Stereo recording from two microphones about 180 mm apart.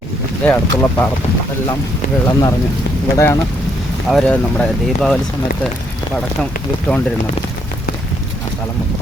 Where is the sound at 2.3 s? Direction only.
20° left (ahead or behind).